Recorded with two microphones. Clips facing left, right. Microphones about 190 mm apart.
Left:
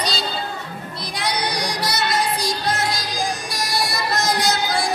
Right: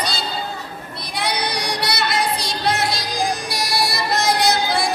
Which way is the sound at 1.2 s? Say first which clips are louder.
Right 1 dB; 65° right (ahead or behind).